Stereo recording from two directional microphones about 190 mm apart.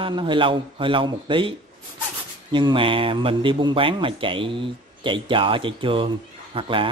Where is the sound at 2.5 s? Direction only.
25° right (ahead or behind).